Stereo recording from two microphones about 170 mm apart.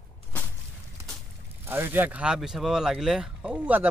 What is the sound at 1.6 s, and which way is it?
Speech, 15° right (ahead or behind).